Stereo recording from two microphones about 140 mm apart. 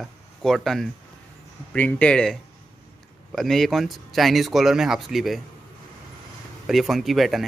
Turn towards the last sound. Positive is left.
turn(degrees=0)  # may be behind; listen again after turning